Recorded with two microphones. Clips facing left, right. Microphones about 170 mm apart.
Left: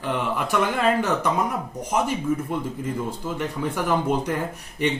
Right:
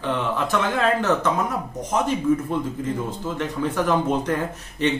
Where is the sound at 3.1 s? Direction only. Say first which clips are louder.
Right 1 dB; 10° left (ahead or behind).